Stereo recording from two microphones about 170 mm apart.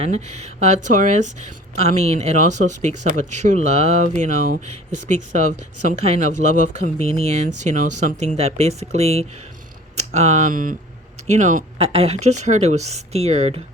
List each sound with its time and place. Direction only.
0.0 s speech: 40° right (ahead or behind)
11.8 s speech: 35° right (ahead or behind)